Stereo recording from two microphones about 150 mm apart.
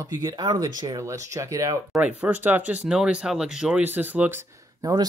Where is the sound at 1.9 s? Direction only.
10° right (ahead or behind).